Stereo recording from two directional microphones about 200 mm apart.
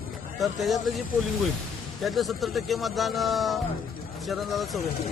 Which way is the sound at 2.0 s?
Centre (ahead or behind).